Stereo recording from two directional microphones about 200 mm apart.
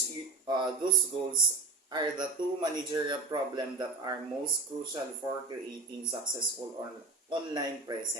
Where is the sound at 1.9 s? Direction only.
20° right (ahead or behind).